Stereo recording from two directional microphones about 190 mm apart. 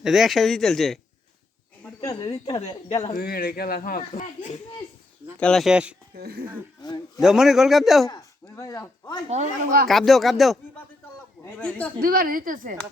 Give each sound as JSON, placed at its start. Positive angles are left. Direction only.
{"t": 0.0, "sound": "speech", "side_deg": 0}
{"t": 2.0, "sound": "speech", "side_deg": 20}
{"t": 2.6, "sound": "speech", "side_deg": 35}
{"t": 3.2, "sound": "speech", "side_deg": 50}
{"t": 5.4, "sound": "speech", "side_deg": 5}
{"t": 6.1, "sound": "speech", "side_deg": -55}
{"t": 7.2, "sound": "speech", "side_deg": 0}
{"t": 8.1, "sound": "speech", "side_deg": 15}
{"t": 9.3, "sound": "speech", "side_deg": -40}
{"t": 9.9, "sound": "speech", "side_deg": 0}
{"t": 11.9, "sound": "speech", "side_deg": -50}